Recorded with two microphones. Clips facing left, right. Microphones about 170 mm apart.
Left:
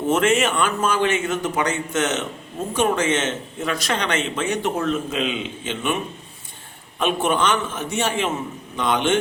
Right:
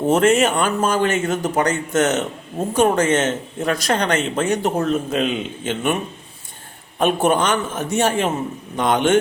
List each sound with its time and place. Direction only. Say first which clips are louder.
0.1 s a man's voice: right 3 dB; 40° right (ahead or behind)
7.0 s a man's voice: right 3 dB; 40° right (ahead or behind)